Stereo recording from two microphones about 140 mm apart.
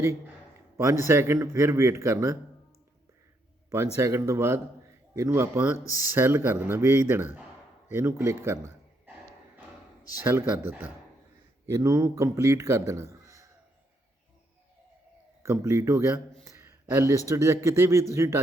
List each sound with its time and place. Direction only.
0.8 s a man's voice: 20° right (ahead or behind)
3.9 s a man's voice: 20° right (ahead or behind)
10.2 s a man's voice: 10° right (ahead or behind)
15.4 s a man's voice: 20° right (ahead or behind)